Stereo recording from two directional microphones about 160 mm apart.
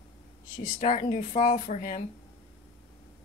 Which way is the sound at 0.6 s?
50° left (ahead or behind).